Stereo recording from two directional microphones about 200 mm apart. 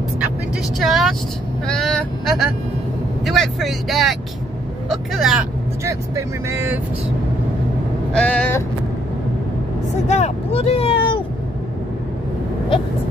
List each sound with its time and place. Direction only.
0.7 s speech: centre (ahead or behind)
5.9 s speech: 15° right (ahead or behind)
8.1 s speech: 5° left (ahead or behind)
10.0 s speech: 35° left (ahead or behind)